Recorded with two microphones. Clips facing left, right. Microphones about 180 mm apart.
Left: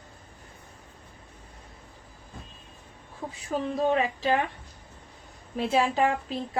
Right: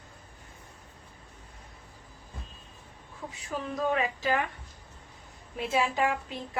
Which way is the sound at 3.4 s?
30° left (ahead or behind).